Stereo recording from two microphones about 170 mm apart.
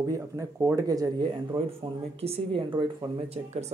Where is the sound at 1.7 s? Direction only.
35° right (ahead or behind).